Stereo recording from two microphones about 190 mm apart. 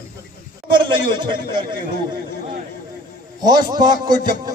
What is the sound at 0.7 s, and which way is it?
Speech, 25° right (ahead or behind).